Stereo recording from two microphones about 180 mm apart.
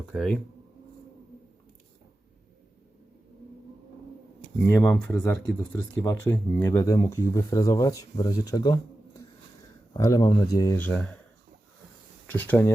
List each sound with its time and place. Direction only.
0.1 s speech: centre (ahead or behind)
4.6 s speech: 10° left (ahead or behind)
9.9 s speech: 20° left (ahead or behind)
12.3 s speech: 10° left (ahead or behind)